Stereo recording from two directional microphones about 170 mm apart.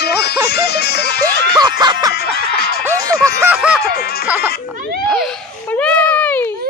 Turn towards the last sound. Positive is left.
turn(degrees=10)  # may be behind; listen again after turning